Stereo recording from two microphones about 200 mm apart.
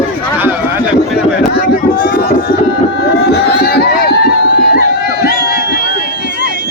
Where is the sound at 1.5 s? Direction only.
50° left (ahead or behind).